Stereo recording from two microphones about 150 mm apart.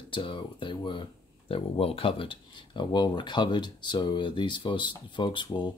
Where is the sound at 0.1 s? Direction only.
35° left (ahead or behind).